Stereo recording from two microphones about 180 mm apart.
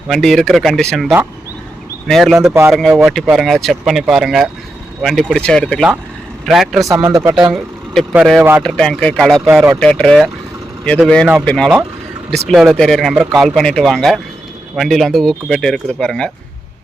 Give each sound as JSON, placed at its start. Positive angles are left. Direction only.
{"t": 0.1, "sound": "speech", "side_deg": 0}
{"t": 6.8, "sound": "speech", "side_deg": -20}
{"t": 7.5, "sound": "speech", "side_deg": -5}
{"t": 9.8, "sound": "speech", "side_deg": 5}